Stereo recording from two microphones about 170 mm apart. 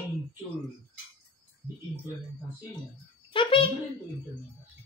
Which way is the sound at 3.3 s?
30° left (ahead or behind).